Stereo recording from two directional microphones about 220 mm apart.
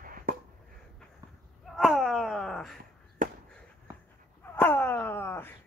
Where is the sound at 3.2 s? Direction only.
35° right (ahead or behind).